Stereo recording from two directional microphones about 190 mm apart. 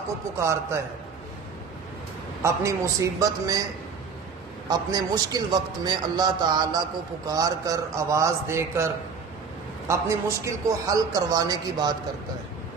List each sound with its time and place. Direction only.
0.4 s a man's voice: 15° right (ahead or behind)
2.4 s a man's voice: 15° right (ahead or behind)
4.6 s a man's voice: 20° right (ahead or behind)
9.8 s a man's voice: 15° right (ahead or behind)